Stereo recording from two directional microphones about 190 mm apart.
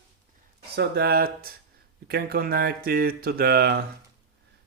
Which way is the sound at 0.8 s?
55° right (ahead or behind).